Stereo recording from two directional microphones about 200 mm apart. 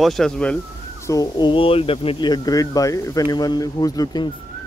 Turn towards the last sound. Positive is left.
turn(degrees=20)  # may be behind; listen again after turning